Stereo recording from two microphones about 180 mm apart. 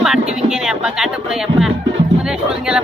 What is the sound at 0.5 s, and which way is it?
Music, 5° right (ahead or behind).